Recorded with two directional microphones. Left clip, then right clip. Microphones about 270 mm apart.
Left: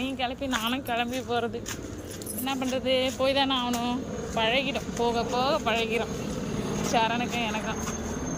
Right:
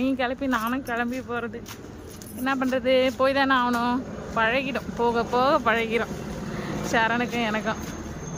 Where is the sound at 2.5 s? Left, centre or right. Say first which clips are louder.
Right 5 dB; centre.